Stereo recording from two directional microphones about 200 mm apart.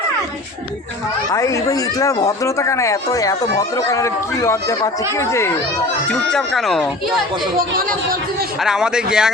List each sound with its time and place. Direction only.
1.3 s speech: 15° left (ahead or behind)
6.1 s speech: centre (ahead or behind)
7.8 s speech: 45° right (ahead or behind)
8.6 s speech: 5° right (ahead or behind)